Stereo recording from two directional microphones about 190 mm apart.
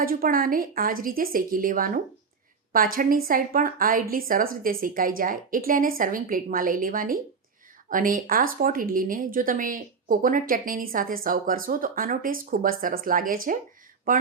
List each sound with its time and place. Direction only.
0.0 s speech: 50° right (ahead or behind)